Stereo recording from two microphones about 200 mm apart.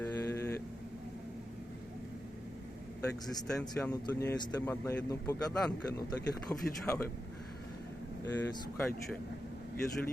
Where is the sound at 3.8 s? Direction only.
15° left (ahead or behind).